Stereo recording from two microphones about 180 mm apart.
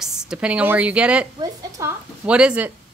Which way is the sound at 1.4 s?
15° right (ahead or behind).